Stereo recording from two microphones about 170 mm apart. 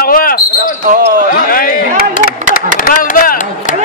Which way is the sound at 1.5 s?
55° left (ahead or behind).